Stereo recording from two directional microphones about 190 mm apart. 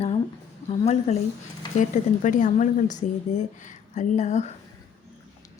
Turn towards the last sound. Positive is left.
turn(degrees=35)  # may be behind; listen again after turning